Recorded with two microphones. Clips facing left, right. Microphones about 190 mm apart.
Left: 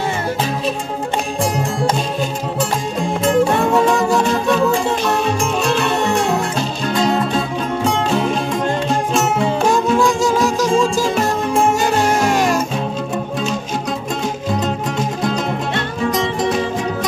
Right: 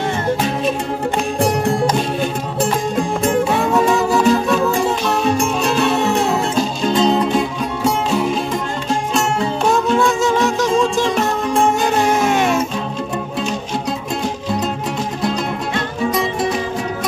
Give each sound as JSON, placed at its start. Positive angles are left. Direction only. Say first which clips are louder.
{"t": 1.4, "sound": "music", "louder": "right 3 dB", "side_deg": -65}
{"t": 3.4, "sound": "music", "louder": "left 1 dB", "side_deg": -5}
{"t": 6.9, "sound": "music", "louder": "right 1 dB", "side_deg": -20}
{"t": 9.7, "sound": "music", "louder": "right 1 dB", "side_deg": 0}